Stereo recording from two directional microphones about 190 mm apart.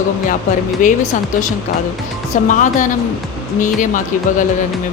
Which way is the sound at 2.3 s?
40° left (ahead or behind).